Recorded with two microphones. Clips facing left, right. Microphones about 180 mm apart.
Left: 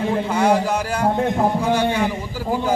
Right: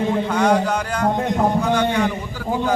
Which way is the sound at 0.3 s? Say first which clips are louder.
Even; 10° left (ahead or behind).